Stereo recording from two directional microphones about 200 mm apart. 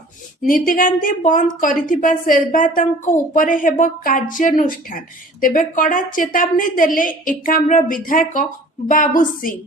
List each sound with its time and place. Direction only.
0.4 s a woman's voice: 45° left (ahead or behind)